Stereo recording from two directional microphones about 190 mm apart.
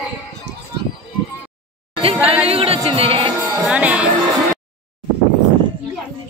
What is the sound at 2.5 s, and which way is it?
Speech, 30° right (ahead or behind).